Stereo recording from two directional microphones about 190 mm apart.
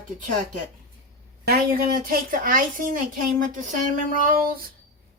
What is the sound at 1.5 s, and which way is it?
A woman's voice, 50° right (ahead or behind).